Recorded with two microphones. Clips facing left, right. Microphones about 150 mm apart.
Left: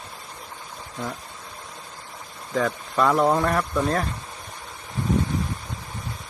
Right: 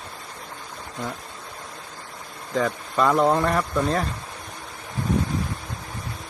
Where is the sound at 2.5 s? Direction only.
Centre (ahead or behind).